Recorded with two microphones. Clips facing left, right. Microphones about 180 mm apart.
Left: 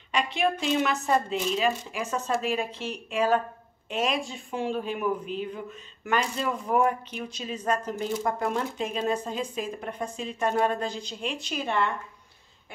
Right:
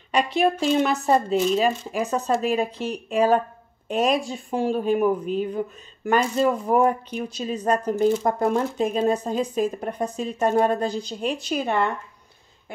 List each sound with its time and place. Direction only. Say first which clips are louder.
0.1 s speech: right 5 dB; 40° right (ahead or behind)